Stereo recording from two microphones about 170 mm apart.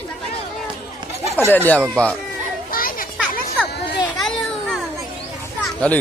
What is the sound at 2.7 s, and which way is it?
Children playing, 55° left (ahead or behind).